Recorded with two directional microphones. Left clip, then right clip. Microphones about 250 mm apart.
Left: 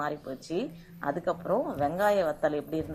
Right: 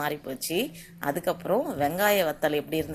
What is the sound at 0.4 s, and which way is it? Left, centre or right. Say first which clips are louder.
A woman's voice: right 5 dB; right.